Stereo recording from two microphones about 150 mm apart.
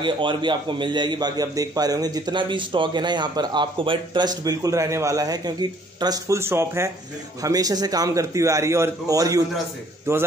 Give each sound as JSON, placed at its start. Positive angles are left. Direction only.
{"t": 0.0, "sound": "a man's voice", "side_deg": -30}